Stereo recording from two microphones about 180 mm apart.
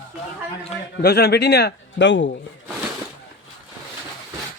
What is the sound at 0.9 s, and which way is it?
Speech, 65° left (ahead or behind).